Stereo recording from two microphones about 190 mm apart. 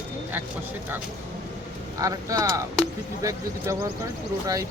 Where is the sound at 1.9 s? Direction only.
20° right (ahead or behind).